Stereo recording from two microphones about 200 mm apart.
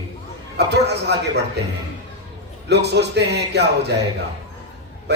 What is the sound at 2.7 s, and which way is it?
Speech, 55° right (ahead or behind).